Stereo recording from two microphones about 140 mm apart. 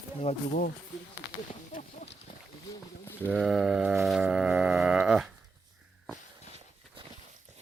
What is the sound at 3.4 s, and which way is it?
Cattle, 5° right (ahead or behind).